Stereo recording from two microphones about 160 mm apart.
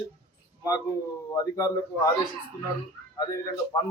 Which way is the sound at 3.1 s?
20° left (ahead or behind).